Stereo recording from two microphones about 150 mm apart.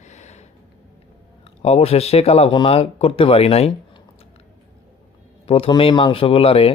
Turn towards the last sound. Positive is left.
turn(degrees=40)  # may be behind; listen again after turning